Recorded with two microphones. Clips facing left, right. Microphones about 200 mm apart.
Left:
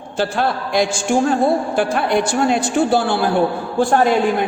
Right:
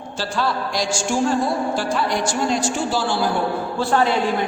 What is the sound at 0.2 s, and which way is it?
A woman's voice, 55° left (ahead or behind).